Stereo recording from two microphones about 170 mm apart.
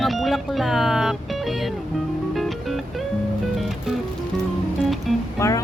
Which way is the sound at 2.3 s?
Centre (ahead or behind).